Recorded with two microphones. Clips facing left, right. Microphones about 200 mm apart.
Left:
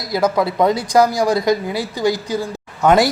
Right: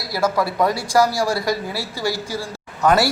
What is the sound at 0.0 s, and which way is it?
A man's voice, 20° left (ahead or behind).